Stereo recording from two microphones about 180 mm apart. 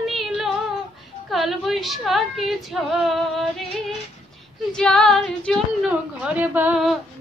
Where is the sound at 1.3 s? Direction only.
Centre (ahead or behind).